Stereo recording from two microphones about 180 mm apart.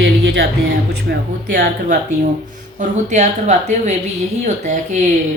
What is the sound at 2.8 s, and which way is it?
Speech, 40° right (ahead or behind).